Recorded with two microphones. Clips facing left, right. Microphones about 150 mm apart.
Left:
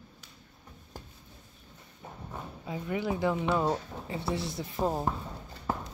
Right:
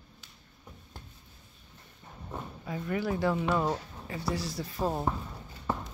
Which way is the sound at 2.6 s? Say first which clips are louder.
Even; 15° left (ahead or behind).